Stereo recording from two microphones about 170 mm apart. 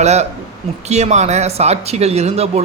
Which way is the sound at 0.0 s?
40° right (ahead or behind).